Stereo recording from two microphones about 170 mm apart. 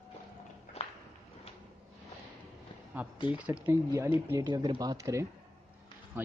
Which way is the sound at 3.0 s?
10° right (ahead or behind).